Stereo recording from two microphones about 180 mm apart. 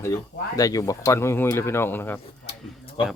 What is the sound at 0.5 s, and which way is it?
Speech, 20° left (ahead or behind).